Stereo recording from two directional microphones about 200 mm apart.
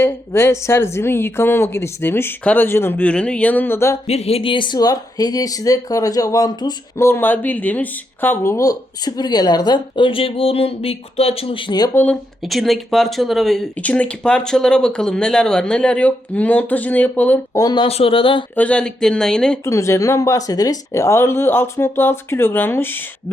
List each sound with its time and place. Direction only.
0.0 s speech: 15° left (ahead or behind)
4.0 s speech: 30° left (ahead or behind)
11.9 s speech: 5° left (ahead or behind); by 18.4 s 25° left (ahead or behind)
18.5 s speech: 5° left (ahead or behind)
19.6 s speech: 15° left (ahead or behind)